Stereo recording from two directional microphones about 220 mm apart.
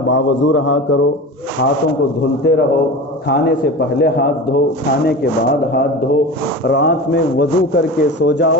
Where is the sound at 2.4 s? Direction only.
45° left (ahead or behind).